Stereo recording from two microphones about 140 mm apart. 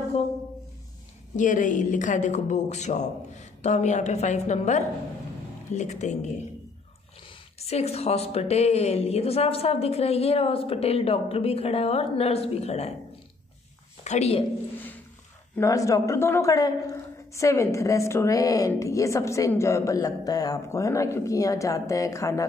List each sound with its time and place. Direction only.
1.3 s speech: 65° left (ahead or behind)
7.5 s a woman's voice: 50° left (ahead or behind)
14.0 s a woman's voice: 50° left (ahead or behind)
15.5 s a woman's voice: 20° left (ahead or behind)